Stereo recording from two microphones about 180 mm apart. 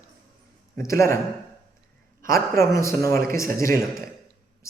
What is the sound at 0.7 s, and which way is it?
Speech, 15° left (ahead or behind).